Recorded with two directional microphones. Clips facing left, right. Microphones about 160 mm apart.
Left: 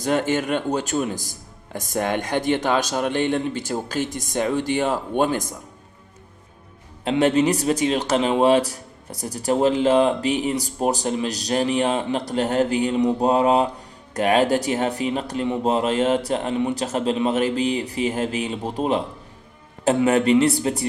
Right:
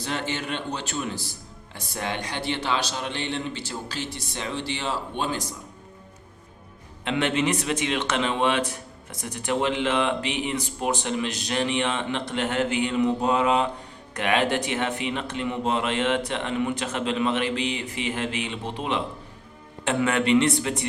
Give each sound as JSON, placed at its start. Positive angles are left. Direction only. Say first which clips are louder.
{"t": 0.0, "sound": "speech", "louder": "left 8 dB", "side_deg": 45}
{"t": 7.0, "sound": "a man's voice", "louder": "left 6 dB", "side_deg": 40}
{"t": 20.1, "sound": "a man's voice", "louder": "left 3 dB", "side_deg": 40}